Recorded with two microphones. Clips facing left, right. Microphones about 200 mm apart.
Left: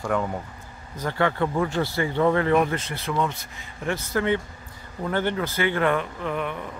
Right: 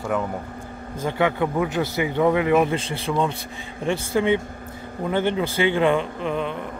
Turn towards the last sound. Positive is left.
turn(degrees=-20)  # may be behind; listen again after turning